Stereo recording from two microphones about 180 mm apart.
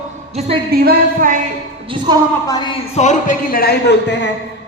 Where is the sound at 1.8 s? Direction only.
25° right (ahead or behind).